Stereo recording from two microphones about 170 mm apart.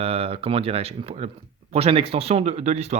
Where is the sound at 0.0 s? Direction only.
35° right (ahead or behind).